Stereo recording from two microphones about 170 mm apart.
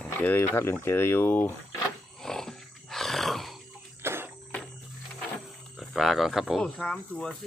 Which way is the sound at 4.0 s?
15° right (ahead or behind).